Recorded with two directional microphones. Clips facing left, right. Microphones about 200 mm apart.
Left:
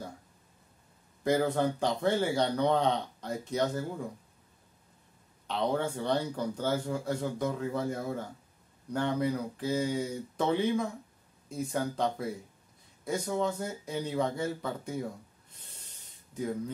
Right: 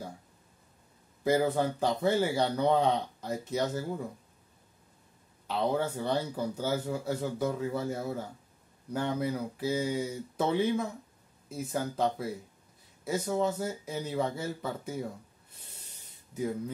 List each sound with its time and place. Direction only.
1.2 s speech: 5° right (ahead or behind)
5.5 s speech: 5° right (ahead or behind)
16.3 s speech: 5° right (ahead or behind)